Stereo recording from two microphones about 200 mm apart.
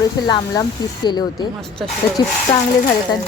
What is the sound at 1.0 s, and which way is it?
A woman's voice, 20° left (ahead or behind).